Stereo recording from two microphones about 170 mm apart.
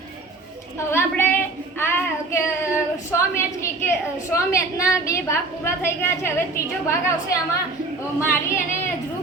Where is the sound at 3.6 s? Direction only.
15° left (ahead or behind).